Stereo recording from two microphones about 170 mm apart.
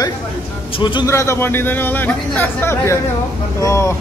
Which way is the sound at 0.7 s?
30° left (ahead or behind).